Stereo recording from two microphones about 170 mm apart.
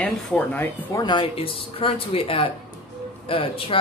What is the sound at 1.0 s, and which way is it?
Speech, 30° left (ahead or behind).